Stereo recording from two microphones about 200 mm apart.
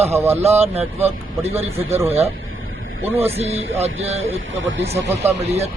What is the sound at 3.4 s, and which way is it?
Speech, 30° right (ahead or behind).